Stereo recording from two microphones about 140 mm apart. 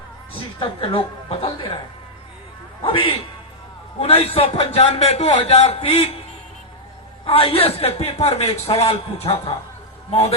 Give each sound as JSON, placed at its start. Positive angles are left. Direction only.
{"t": 0.6, "sound": "speech", "side_deg": 40}
{"t": 2.8, "sound": "a man's voice", "side_deg": 40}
{"t": 7.3, "sound": "a man's voice", "side_deg": 40}